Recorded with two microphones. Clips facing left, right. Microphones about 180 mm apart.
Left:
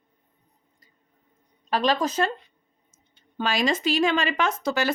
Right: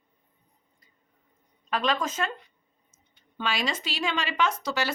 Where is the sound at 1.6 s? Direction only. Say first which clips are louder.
Left 4 dB; 35° left (ahead or behind).